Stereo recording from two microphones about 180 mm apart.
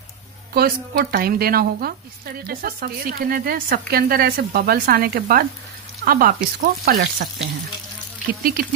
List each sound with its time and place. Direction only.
0.5 s a woman's voice: 55° right (ahead or behind)
8.3 s speech: 55° right (ahead or behind)